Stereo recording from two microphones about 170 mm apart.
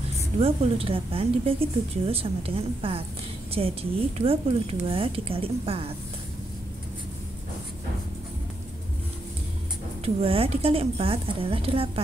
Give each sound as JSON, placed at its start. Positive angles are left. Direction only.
{"t": 0.4, "sound": "a woman's voice", "side_deg": -35}
{"t": 10.0, "sound": "a woman's voice", "side_deg": -35}